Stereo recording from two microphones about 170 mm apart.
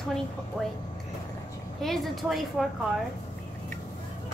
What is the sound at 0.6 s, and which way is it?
Speech, centre (ahead or behind).